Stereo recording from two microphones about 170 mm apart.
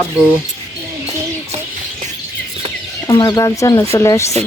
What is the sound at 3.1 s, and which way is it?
Speech, 20° left (ahead or behind).